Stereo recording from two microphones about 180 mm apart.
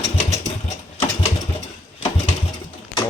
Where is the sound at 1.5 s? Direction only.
35° left (ahead or behind).